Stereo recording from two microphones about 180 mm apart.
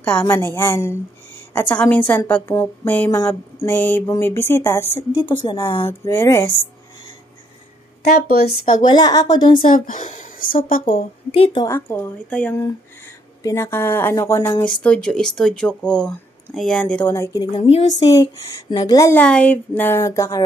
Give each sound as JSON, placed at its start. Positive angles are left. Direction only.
{"t": 0.0, "sound": "a woman's voice", "side_deg": 10}
{"t": 4.9, "sound": "a woman's voice", "side_deg": 25}
{"t": 5.9, "sound": "a woman's voice", "side_deg": 15}
{"t": 8.3, "sound": "speech", "side_deg": 60}
{"t": 8.8, "sound": "a woman's voice", "side_deg": 20}
{"t": 9.8, "sound": "speech", "side_deg": 45}
{"t": 11.3, "sound": "a woman's voice", "side_deg": 30}
{"t": 11.6, "sound": "a woman's voice", "side_deg": 15}
{"t": 14.8, "sound": "speech", "side_deg": 5}
{"t": 17.5, "sound": "speech", "side_deg": 35}
{"t": 17.9, "sound": "a woman's voice", "side_deg": 20}